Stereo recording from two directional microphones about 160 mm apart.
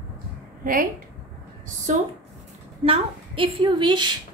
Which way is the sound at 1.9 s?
50° right (ahead or behind).